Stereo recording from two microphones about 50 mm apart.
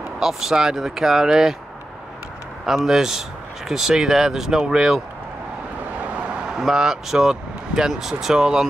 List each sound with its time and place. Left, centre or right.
0.2 s speech: centre
2.6 s speech: centre
6.1 s speech: right